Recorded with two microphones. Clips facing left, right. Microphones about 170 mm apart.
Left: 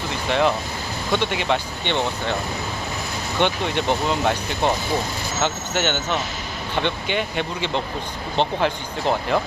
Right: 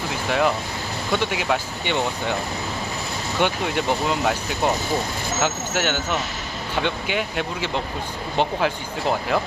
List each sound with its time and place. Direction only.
0.1 s a sound: 5° right (ahead or behind)
1.1 s speech: 5° right (ahead or behind)
3.4 s speech: 5° right (ahead or behind)